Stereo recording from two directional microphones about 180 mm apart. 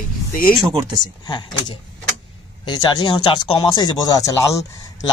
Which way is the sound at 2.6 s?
25° left (ahead or behind).